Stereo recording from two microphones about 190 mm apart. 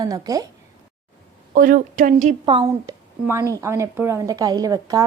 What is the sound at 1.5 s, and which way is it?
Speech, 45° right (ahead or behind).